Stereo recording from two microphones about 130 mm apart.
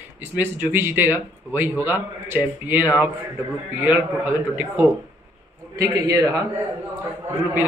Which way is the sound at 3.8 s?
15° right (ahead or behind).